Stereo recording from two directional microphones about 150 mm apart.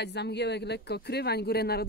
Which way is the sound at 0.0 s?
90° left.